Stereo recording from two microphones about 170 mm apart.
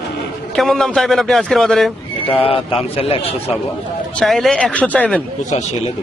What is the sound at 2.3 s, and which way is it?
Speech, 35° left (ahead or behind).